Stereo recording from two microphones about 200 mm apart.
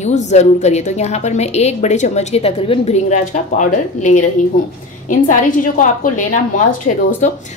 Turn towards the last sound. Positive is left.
turn(degrees=40)  # may be behind; listen again after turning